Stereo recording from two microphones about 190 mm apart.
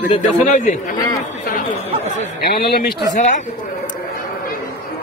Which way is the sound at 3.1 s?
40° left (ahead or behind).